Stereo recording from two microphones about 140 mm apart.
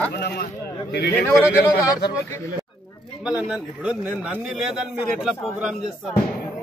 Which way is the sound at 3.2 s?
5° right (ahead or behind).